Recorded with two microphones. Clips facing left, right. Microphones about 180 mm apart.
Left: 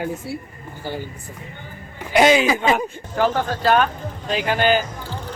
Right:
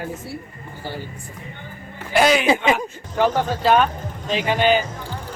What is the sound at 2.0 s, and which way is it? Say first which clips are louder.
Speech: left 2 dB; 20° left (ahead or behind).